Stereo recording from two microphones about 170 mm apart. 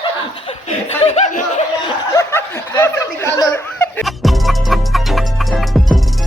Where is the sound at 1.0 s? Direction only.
40° left (ahead or behind).